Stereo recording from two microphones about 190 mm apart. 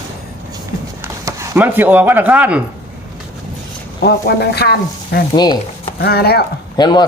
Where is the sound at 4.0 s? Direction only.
60° left (ahead or behind).